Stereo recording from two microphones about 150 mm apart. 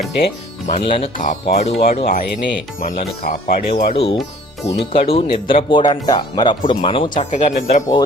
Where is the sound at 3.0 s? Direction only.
70° left (ahead or behind).